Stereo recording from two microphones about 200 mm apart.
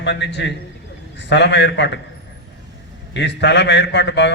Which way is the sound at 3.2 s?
60° left (ahead or behind).